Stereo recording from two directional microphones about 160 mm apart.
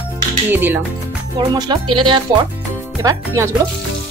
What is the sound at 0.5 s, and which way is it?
Speech, 10° right (ahead or behind).